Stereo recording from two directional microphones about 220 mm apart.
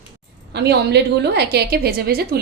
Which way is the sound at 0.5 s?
50° right (ahead or behind).